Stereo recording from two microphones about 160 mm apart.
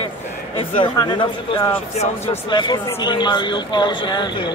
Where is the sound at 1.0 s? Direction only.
30° left (ahead or behind).